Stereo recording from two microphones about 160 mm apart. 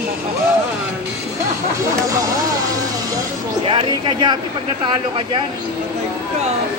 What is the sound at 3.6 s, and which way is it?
Speech, 30° right (ahead or behind).